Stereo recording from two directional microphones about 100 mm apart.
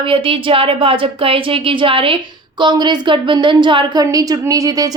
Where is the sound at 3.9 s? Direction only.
35° right (ahead or behind).